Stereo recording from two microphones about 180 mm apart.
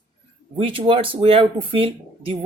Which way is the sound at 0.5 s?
30° right (ahead or behind).